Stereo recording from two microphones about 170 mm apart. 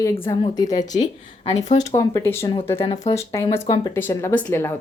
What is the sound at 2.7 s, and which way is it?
Speech, 30° left (ahead or behind).